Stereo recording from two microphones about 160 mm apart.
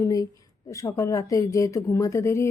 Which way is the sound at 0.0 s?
20° left (ahead or behind).